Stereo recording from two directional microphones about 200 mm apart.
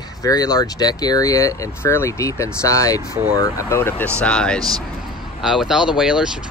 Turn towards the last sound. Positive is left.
turn(degrees=-5)  # may be behind; listen again after turning